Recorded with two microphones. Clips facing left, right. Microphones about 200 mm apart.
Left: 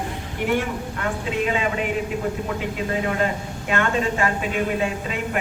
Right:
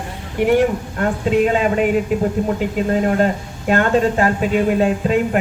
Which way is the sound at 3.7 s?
40° right (ahead or behind).